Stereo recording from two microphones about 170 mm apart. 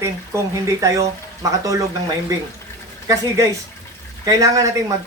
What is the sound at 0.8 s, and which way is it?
Speech, 20° right (ahead or behind).